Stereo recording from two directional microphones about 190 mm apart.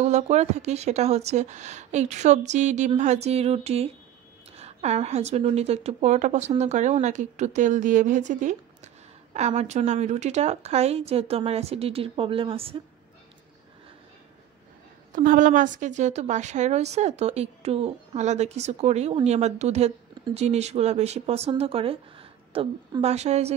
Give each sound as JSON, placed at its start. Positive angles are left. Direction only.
{"t": 0.0, "sound": "a woman's voice", "side_deg": -35}
{"t": 15.1, "sound": "a woman's voice", "side_deg": -45}